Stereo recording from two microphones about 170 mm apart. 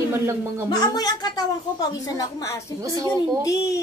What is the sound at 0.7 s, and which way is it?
Speech, 25° left (ahead or behind).